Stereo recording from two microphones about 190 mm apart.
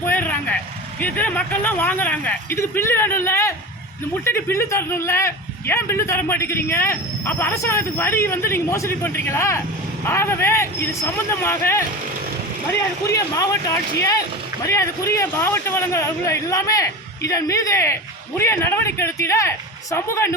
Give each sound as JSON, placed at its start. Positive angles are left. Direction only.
{"t": 0.0, "sound": "speech", "side_deg": 10}
{"t": 13.1, "sound": "speech", "side_deg": 15}